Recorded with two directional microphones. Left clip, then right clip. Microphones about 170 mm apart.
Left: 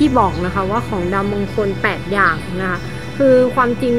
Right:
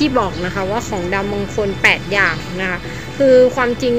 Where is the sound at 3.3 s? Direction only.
50° left (ahead or behind).